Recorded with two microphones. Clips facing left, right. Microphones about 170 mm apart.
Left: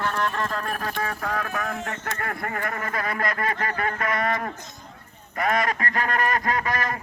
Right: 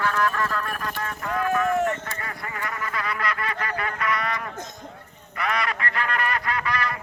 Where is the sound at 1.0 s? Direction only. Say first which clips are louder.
Right 3 dB; 65° left (ahead or behind); by 1.7 s 85° left.